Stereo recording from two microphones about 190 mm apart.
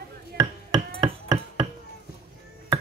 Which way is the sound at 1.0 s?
20° right (ahead or behind).